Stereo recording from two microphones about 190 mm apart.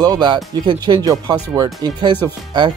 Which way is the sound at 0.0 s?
20° right (ahead or behind).